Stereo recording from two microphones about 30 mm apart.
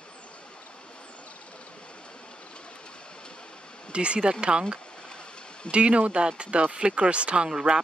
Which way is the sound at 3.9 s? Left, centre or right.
Right.